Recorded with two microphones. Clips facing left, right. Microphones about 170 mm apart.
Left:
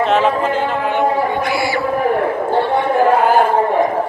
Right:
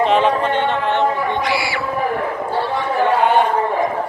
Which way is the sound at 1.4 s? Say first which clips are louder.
Left 3 dB; 45° left (ahead or behind).